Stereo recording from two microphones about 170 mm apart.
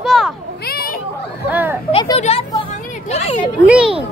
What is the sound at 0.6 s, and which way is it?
Children playing, 60° left (ahead or behind).